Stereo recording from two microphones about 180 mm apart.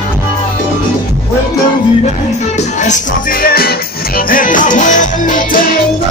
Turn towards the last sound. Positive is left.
turn(degrees=45)  # may be behind; listen again after turning